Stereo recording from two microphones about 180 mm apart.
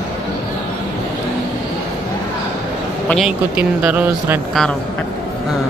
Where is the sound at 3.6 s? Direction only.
10° right (ahead or behind).